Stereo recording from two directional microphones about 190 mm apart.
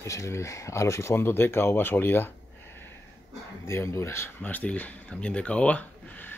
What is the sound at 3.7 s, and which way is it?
Speech, 15° left (ahead or behind).